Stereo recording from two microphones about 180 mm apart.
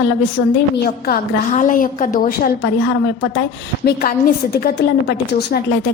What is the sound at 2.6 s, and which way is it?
Speech, 75° left (ahead or behind).